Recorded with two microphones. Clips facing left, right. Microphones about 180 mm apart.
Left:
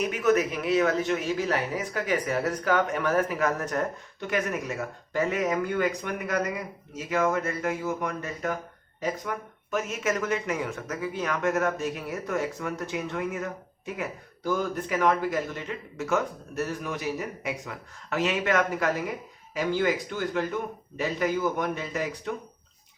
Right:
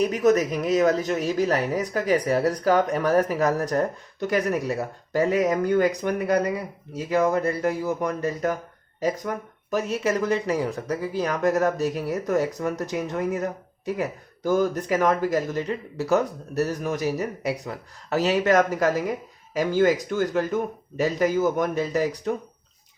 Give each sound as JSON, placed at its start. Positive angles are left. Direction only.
{"t": 0.0, "sound": "speech", "side_deg": -35}